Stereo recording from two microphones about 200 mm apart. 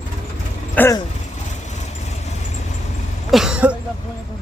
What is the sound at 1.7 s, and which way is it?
Vehicle, 35° left (ahead or behind).